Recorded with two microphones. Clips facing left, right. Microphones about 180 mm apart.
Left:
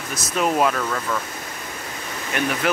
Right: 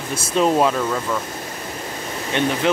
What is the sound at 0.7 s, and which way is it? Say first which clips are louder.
Speech: right 3 dB; 15° right (ahead or behind).